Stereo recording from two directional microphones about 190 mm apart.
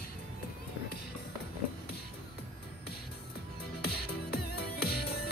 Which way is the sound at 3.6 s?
55° left (ahead or behind).